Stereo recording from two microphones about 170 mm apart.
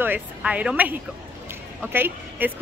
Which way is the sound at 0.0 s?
10° right (ahead or behind).